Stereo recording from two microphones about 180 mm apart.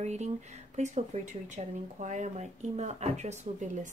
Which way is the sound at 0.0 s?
40° right (ahead or behind).